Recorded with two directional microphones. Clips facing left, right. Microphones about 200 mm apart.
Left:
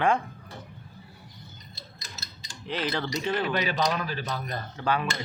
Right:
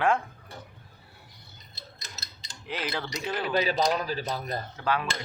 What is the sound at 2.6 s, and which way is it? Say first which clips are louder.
Speech: left 3 dB; 10° right (ahead or behind).